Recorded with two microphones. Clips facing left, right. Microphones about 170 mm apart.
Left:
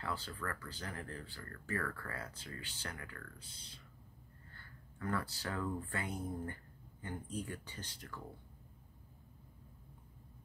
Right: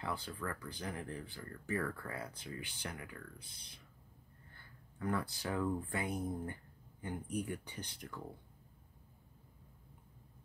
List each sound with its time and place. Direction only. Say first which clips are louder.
0.0 s speech: right 1 dB; 15° right (ahead or behind)